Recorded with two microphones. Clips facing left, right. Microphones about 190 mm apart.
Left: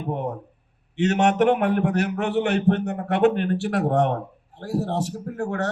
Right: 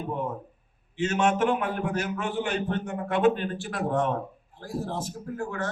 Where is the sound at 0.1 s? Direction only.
70° left (ahead or behind).